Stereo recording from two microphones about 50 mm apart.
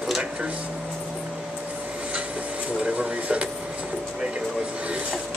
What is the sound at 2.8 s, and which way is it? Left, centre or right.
Speech, right.